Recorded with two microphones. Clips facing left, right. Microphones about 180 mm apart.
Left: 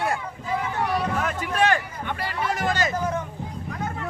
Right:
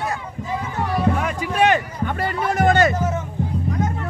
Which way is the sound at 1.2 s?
5° right (ahead or behind).